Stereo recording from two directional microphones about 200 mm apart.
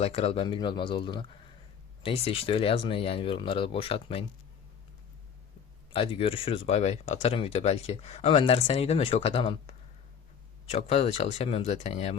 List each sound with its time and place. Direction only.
0.0 s speech: 30° left (ahead or behind)
5.9 s speech: 25° left (ahead or behind)